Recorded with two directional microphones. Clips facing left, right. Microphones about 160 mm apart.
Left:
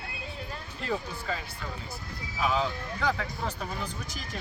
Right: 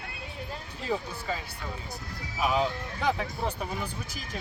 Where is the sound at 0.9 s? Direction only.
10° right (ahead or behind).